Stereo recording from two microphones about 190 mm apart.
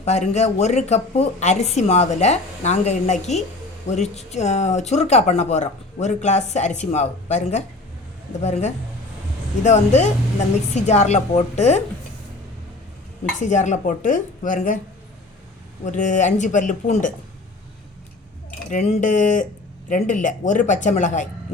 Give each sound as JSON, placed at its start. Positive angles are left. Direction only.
{"t": 0.0, "sound": "speech", "side_deg": 35}
{"t": 13.4, "sound": "speech", "side_deg": 40}
{"t": 15.8, "sound": "speech", "side_deg": 40}
{"t": 18.7, "sound": "speech", "side_deg": 40}